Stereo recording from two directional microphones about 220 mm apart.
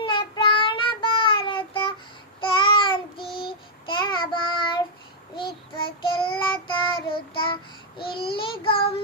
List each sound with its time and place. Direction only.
0.0 s child singing: 20° left (ahead or behind)
5.7 s child singing: 20° left (ahead or behind)